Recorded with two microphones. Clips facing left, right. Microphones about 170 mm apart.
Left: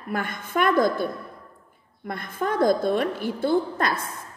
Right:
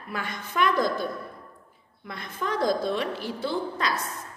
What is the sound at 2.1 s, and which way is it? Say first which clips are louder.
A woman's voice: left 4 dB; 50° left (ahead or behind).